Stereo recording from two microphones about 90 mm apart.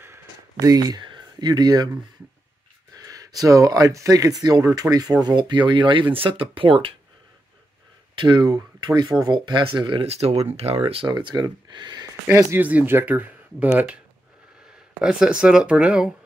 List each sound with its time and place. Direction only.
0.0 s a sound: 30° right (ahead or behind)
0.7 s speech: 45° right (ahead or behind)
2.9 s speech: 40° right (ahead or behind)
5.2 s speech: 60° right (ahead or behind); by 6.9 s 75° right (ahead or behind)
8.2 s speech: 60° right (ahead or behind)
10.7 s speech: 90° right
11.1 s speech: 50° right (ahead or behind)
12.1 s speech: 35° right (ahead or behind)
12.5 s speech: 20° right (ahead or behind)
15.0 s speech: 10° right (ahead or behind)